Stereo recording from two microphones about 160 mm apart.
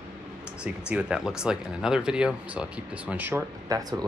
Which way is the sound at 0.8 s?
5° right (ahead or behind).